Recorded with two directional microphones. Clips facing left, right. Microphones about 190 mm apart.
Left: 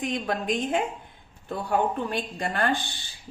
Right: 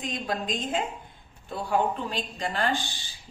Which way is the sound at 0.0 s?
60° left (ahead or behind).